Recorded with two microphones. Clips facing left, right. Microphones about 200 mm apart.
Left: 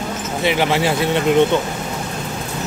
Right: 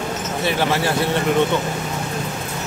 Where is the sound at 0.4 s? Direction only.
15° left (ahead or behind).